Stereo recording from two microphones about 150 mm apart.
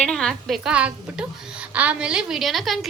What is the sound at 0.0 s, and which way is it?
A woman's voice, 5° left (ahead or behind).